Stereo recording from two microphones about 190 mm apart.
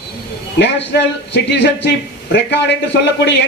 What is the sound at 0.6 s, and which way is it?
A man's voice, 65° left (ahead or behind).